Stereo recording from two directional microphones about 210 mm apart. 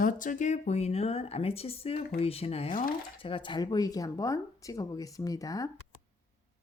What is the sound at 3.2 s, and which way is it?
Speech, 25° left (ahead or behind).